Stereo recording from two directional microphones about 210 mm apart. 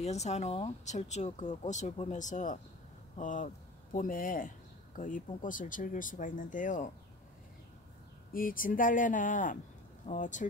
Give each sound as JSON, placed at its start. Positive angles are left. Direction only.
{"t": 0.0, "sound": "speech", "side_deg": 30}
{"t": 8.3, "sound": "speech", "side_deg": 40}